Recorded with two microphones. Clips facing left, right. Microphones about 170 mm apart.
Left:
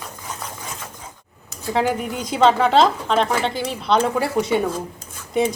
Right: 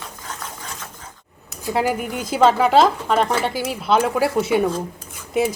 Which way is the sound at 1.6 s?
10° right (ahead or behind).